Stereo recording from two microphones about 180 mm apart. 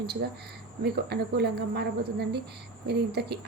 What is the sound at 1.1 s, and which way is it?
A woman's voice, 65° right (ahead or behind).